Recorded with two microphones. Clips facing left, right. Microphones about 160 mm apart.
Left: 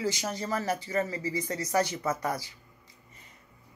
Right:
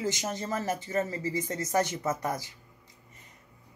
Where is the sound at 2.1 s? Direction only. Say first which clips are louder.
Even; 20° right (ahead or behind).